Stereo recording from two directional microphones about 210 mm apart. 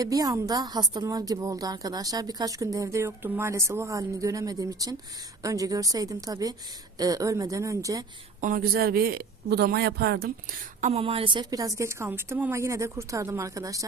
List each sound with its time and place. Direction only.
0.0 s a woman's voice: 15° right (ahead or behind)
8.4 s speech: 40° right (ahead or behind)
10.8 s a woman's voice: 30° right (ahead or behind); by 13.8 s 15° right (ahead or behind)